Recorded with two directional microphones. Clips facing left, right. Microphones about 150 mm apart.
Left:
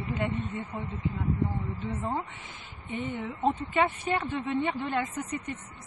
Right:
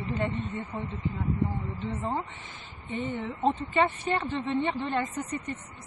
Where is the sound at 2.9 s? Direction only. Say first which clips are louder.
Right 1 dB; 10° left (ahead or behind).